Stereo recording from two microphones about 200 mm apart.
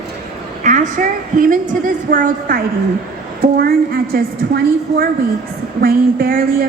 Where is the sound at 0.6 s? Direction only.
40° right (ahead or behind).